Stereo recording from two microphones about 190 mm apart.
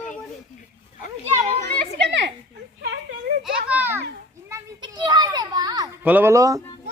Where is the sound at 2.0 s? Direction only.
70° right (ahead or behind).